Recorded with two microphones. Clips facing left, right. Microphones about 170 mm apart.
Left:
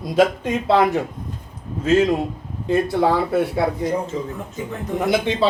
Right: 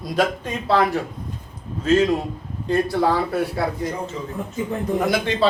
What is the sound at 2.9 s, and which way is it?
Speech, 25° left (ahead or behind).